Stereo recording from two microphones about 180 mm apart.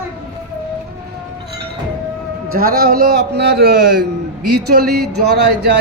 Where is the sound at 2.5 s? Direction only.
60° right (ahead or behind).